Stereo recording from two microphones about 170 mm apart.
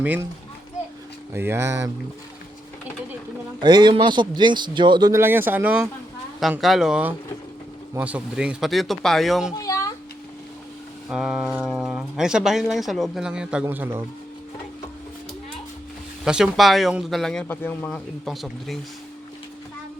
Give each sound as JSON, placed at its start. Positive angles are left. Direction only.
{"t": 0.0, "sound": "speech", "side_deg": -10}
{"t": 1.3, "sound": "speech", "side_deg": -15}
{"t": 3.6, "sound": "speech", "side_deg": -25}
{"t": 5.2, "sound": "speech", "side_deg": -15}
{"t": 9.6, "sound": "a sound", "side_deg": 20}
{"t": 11.1, "sound": "speech", "side_deg": 0}
{"t": 16.2, "sound": "speech", "side_deg": -5}